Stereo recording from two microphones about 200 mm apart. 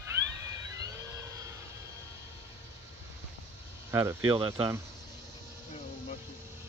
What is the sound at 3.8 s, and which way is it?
Speech, 15° right (ahead or behind).